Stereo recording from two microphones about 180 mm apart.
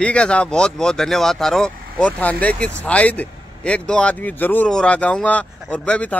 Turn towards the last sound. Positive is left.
turn(degrees=5)  # may be behind; listen again after turning